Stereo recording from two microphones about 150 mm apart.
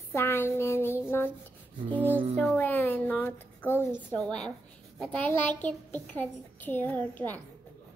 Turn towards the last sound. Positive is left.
turn(degrees=10)  # may be behind; listen again after turning